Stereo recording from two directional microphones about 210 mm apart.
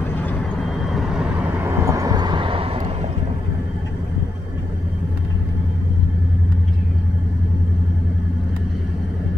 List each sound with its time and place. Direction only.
0.8 s vehicle: centre (ahead or behind); by 3.1 s 25° right (ahead or behind)